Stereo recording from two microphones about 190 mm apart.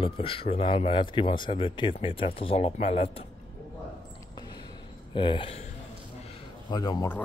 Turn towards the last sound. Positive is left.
turn(degrees=15)  # may be behind; listen again after turning